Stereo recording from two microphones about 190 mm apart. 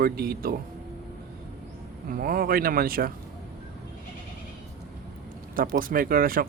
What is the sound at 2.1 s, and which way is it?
Speech, 50° right (ahead or behind).